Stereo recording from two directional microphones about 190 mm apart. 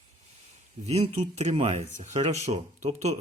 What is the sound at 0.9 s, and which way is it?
Speech, 35° right (ahead or behind).